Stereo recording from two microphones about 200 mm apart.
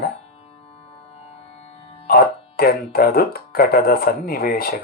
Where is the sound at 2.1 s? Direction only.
50° left (ahead or behind).